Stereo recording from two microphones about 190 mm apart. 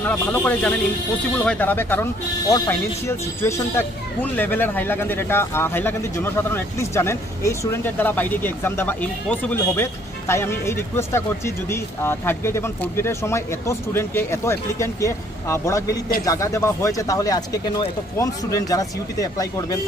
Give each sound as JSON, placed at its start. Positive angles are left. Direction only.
{"t": 0.0, "sound": "speech", "side_deg": 10}